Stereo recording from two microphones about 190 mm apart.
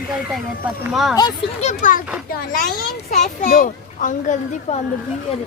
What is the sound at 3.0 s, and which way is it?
A child's voice, 40° left (ahead or behind).